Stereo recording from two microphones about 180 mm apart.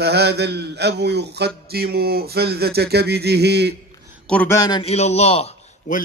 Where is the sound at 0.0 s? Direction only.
65° right (ahead or behind).